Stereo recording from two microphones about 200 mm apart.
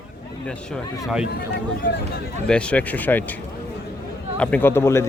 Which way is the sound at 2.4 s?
5° left (ahead or behind).